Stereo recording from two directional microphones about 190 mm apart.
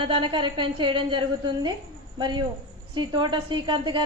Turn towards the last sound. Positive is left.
turn(degrees=-25)  # may be behind; listen again after turning